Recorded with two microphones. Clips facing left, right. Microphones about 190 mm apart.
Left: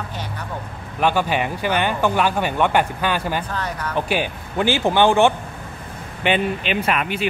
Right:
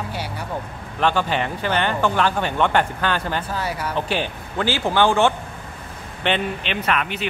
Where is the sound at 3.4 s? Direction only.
10° right (ahead or behind).